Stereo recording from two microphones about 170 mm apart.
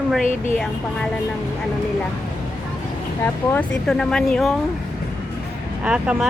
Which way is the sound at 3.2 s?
10° left (ahead or behind).